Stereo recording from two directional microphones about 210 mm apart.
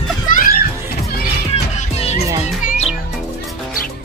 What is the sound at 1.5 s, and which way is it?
Music, 30° left (ahead or behind).